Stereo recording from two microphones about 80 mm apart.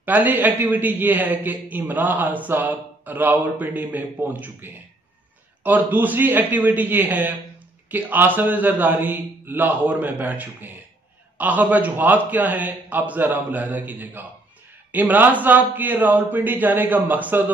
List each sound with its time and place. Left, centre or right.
0.0 s a man's voice: right